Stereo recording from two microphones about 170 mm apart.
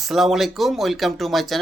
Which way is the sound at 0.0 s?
Centre (ahead or behind).